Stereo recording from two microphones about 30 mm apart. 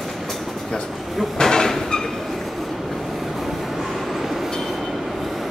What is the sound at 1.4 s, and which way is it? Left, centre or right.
Train, centre.